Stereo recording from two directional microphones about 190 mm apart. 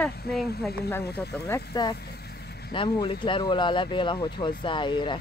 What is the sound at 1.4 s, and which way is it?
Speech, 20° left (ahead or behind).